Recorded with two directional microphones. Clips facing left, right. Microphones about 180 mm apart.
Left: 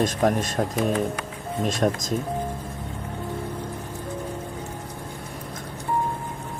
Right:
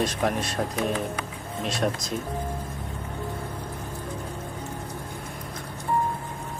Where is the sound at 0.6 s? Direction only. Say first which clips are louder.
Left 3 dB; 40° left (ahead or behind).